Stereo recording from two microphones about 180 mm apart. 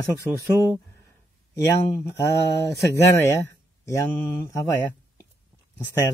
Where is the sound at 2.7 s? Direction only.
15° left (ahead or behind).